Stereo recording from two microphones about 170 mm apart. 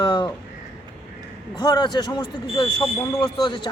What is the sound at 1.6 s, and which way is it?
A man's voice, 25° left (ahead or behind).